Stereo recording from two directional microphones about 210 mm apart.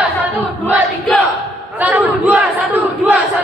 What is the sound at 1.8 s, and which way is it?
Battle cry, 5° right (ahead or behind).